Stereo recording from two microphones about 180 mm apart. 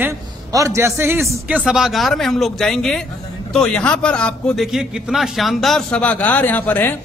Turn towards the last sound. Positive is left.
turn(degrees=10)  # may be behind; listen again after turning